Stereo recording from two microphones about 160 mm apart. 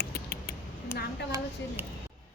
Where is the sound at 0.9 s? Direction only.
15° left (ahead or behind).